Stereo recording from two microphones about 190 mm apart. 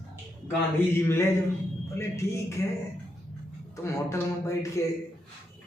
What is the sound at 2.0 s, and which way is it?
Speech, 15° left (ahead or behind).